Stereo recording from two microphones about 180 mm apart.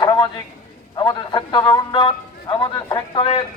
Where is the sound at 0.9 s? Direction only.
25° left (ahead or behind).